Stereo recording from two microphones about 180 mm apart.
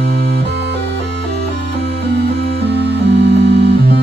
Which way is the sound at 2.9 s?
75° right (ahead or behind).